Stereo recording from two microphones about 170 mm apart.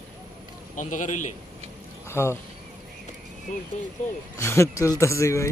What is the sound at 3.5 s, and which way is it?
Speech, 45° left (ahead or behind).